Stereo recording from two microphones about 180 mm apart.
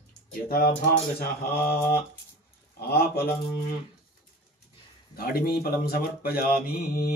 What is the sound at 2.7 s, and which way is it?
Speech, 60° left (ahead or behind).